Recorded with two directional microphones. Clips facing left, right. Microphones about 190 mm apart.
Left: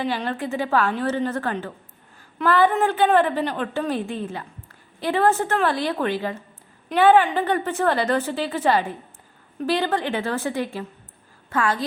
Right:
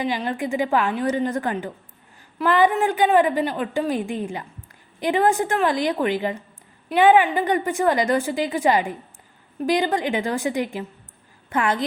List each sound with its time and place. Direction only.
0.0 s a woman's voice: 10° right (ahead or behind)